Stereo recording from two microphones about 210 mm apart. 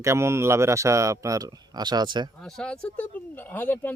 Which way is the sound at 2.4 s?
5° left (ahead or behind).